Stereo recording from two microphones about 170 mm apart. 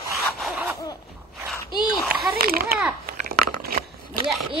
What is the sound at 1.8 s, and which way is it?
Speech, centre (ahead or behind).